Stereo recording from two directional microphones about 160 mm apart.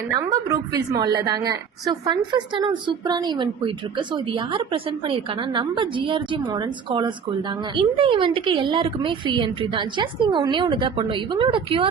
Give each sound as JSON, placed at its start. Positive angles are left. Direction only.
{"t": 0.1, "sound": "a woman's voice", "side_deg": -25}